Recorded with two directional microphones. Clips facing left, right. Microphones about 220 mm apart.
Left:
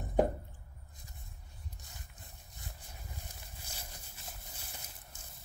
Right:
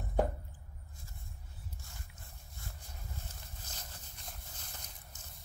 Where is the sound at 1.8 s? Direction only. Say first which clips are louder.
Even; 20° left (ahead or behind).